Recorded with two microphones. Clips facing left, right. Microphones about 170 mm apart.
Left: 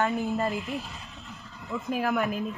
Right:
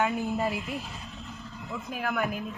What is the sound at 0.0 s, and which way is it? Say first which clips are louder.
Speech: left 1 dB; centre (ahead or behind).